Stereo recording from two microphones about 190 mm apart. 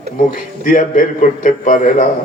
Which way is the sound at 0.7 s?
45° left (ahead or behind).